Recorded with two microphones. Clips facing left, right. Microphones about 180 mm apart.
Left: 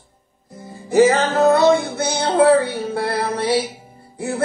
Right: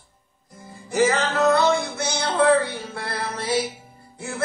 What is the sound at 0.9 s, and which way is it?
Music, 35° left (ahead or behind).